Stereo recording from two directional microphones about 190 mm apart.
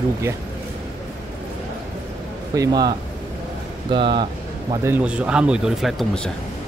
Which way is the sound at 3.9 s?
25° right (ahead or behind).